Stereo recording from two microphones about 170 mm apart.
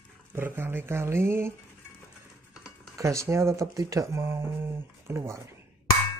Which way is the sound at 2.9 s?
15° right (ahead or behind).